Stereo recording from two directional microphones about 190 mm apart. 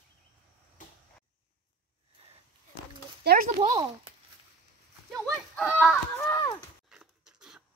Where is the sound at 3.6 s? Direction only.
25° right (ahead or behind).